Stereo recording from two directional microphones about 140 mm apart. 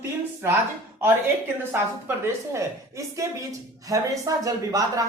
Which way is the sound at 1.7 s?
15° right (ahead or behind).